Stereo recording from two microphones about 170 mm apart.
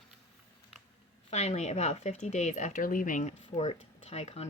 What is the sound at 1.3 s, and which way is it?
Speech, 40° left (ahead or behind).